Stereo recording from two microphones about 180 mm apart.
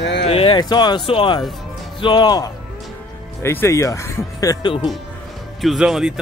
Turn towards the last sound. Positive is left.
turn(degrees=-5)  # may be behind; listen again after turning